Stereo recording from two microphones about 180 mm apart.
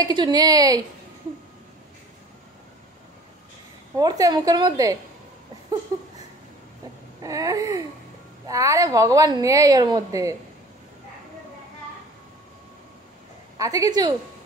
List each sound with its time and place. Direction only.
0.0 s a woman's voice: 25° right (ahead or behind)
3.9 s a woman's voice: 20° right (ahead or behind)
7.2 s a woman's voice: 20° right (ahead or behind)
13.6 s a woman's voice: 20° right (ahead or behind)